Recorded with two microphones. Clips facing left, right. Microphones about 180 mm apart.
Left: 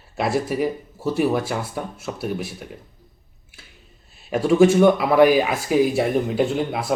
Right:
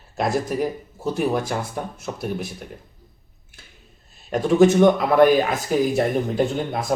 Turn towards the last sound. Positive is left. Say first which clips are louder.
# left 1 dB
turn(degrees=5)  # may be behind; listen again after turning